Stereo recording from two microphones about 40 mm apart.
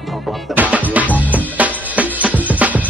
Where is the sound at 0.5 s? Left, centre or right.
Right.